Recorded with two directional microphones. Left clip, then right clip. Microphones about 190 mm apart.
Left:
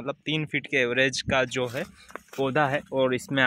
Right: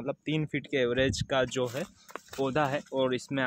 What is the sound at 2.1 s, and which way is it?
Speech, 30° left (ahead or behind).